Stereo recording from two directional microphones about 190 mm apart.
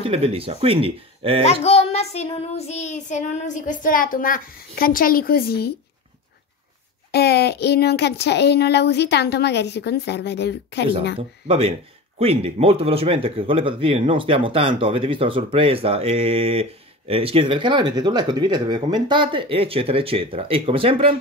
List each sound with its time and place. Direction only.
0.1 s speech: 30° right (ahead or behind)
1.4 s child singing: 35° left (ahead or behind); by 5.8 s 55° left (ahead or behind)
7.1 s speech: 60° left (ahead or behind)
11.1 s speech: 30° right (ahead or behind)